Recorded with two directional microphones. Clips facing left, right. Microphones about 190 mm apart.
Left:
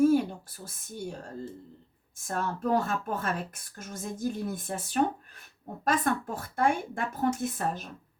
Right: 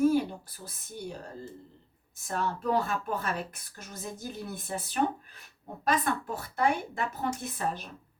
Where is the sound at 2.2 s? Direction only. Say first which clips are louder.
Left 1 dB; 50° left (ahead or behind).